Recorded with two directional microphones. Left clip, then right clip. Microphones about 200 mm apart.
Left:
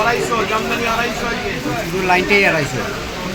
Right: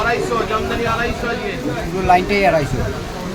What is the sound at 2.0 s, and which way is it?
Speech, 35° right (ahead or behind).